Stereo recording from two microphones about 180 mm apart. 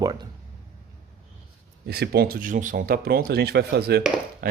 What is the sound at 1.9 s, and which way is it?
Speech, 65° right (ahead or behind).